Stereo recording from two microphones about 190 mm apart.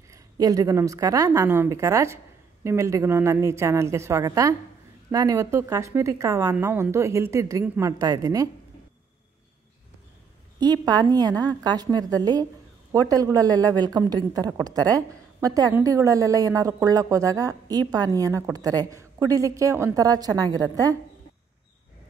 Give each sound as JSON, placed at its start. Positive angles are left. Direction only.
{"t": 0.1, "sound": "a woman's voice", "side_deg": -20}
{"t": 10.6, "sound": "a woman's voice", "side_deg": -20}